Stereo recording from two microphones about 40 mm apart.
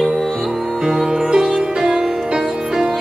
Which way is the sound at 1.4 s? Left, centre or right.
Centre.